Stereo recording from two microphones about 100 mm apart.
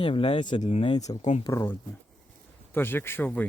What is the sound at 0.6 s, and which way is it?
Speech, 70° left (ahead or behind).